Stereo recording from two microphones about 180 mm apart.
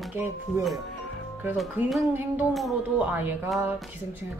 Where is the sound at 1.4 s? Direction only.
Centre (ahead or behind).